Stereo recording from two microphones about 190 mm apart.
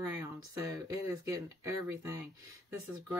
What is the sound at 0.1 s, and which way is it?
Speech, 15° right (ahead or behind).